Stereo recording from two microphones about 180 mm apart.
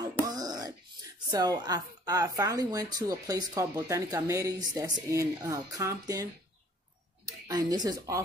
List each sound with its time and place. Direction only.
0.0 s a sound: 20° right (ahead or behind)
1.3 s speech: 20° right (ahead or behind)
7.4 s speech: 20° right (ahead or behind)